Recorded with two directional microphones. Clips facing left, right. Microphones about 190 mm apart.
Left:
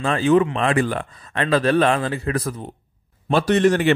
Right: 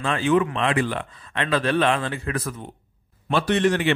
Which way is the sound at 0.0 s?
35° left (ahead or behind).